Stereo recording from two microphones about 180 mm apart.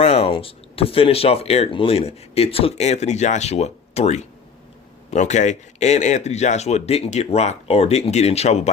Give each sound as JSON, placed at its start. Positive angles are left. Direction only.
{"t": 0.0, "sound": "speech", "side_deg": 35}